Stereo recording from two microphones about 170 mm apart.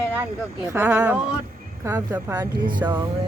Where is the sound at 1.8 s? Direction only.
20° right (ahead or behind).